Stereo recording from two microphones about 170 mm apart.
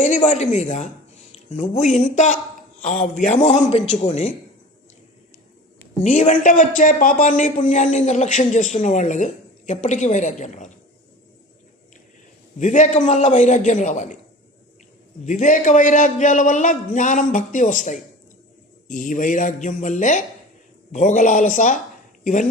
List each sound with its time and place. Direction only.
0.0 s a woman's voice: 45° left (ahead or behind)
6.0 s speech: 45° left (ahead or behind)
12.5 s speech: 45° left (ahead or behind)
15.2 s speech: 45° left (ahead or behind)